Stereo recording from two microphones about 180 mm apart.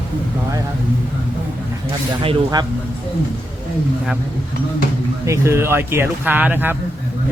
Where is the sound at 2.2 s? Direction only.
25° right (ahead or behind).